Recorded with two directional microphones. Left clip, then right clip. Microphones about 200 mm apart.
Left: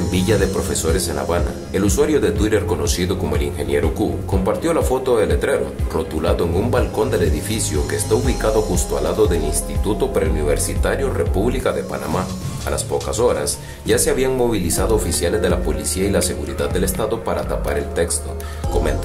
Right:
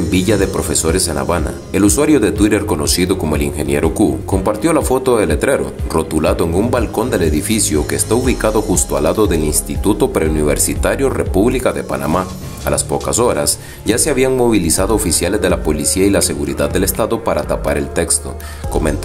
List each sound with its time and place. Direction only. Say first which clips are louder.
0.1 s speech: right 3 dB; 25° right (ahead or behind)